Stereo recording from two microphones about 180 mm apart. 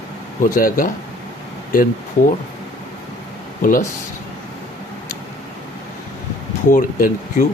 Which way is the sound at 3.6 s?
45° left (ahead or behind).